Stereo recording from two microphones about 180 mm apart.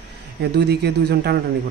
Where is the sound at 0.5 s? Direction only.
65° right (ahead or behind).